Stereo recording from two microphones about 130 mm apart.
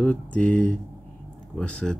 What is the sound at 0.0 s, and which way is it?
Speech, 10° left (ahead or behind).